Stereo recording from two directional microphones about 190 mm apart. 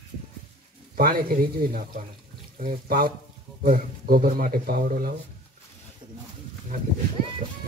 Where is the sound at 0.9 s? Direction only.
50° right (ahead or behind).